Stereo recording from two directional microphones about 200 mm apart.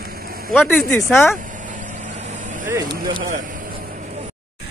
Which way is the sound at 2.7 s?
20° right (ahead or behind).